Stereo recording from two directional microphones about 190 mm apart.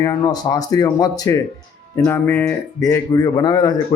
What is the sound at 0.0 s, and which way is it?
Speech, 20° left (ahead or behind).